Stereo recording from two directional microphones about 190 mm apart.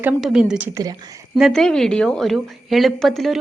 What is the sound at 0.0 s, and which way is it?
Speech, centre (ahead or behind).